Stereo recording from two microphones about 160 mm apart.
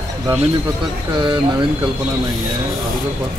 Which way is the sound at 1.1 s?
30° right (ahead or behind).